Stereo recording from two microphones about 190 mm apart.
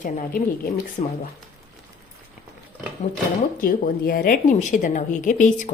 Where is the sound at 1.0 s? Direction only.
35° left (ahead or behind).